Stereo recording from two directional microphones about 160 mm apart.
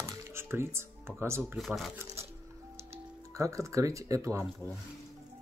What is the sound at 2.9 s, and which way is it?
Speech, 20° right (ahead or behind).